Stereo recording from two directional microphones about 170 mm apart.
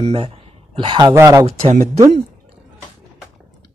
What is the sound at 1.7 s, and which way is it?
Speech, 45° right (ahead or behind).